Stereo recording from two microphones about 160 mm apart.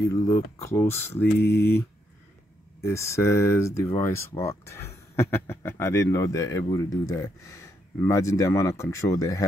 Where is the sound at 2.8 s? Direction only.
15° left (ahead or behind).